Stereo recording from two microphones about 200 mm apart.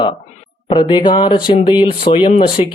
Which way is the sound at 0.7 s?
25° left (ahead or behind).